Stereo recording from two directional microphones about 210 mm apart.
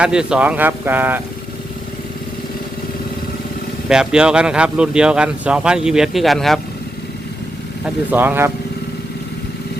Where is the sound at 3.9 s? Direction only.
5° right (ahead or behind).